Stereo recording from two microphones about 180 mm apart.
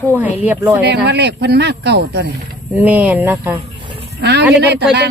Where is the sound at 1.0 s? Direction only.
65° right (ahead or behind).